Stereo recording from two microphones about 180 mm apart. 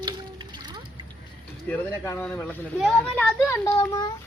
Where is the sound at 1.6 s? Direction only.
10° left (ahead or behind).